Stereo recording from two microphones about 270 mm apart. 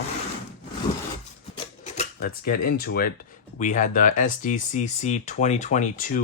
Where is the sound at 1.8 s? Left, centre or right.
Left.